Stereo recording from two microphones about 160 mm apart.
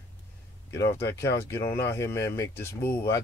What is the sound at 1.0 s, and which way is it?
Speech, 20° left (ahead or behind).